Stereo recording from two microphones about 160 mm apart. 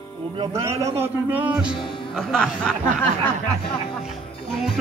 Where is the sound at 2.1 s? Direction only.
5° left (ahead or behind).